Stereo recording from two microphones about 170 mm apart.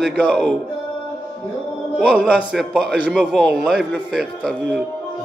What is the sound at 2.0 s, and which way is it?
A man's voice, 5° right (ahead or behind).